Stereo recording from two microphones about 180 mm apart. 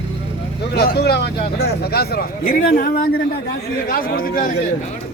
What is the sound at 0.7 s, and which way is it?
Speech, 65° left (ahead or behind).